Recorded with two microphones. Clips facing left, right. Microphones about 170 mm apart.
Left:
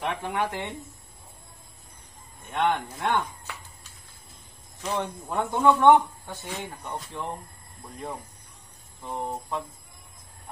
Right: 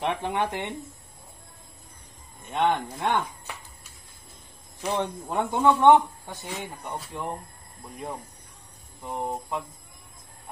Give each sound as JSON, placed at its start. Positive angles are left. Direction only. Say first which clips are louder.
{"t": 0.0, "sound": "speech", "louder": "right 2 dB", "side_deg": -20}
{"t": 2.6, "sound": "speech", "louder": "right 1 dB", "side_deg": -20}
{"t": 4.8, "sound": "speech", "louder": "right 2 dB", "side_deg": -15}
{"t": 6.4, "sound": "speech", "louder": "even", "side_deg": 0}
{"t": 6.8, "sound": "speech", "louder": "even", "side_deg": -10}
{"t": 9.0, "sound": "speech", "louder": "right 1 dB", "side_deg": -15}